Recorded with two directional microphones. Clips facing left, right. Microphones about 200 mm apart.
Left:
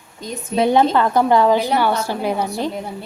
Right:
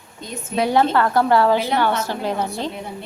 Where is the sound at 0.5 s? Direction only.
20° left (ahead or behind).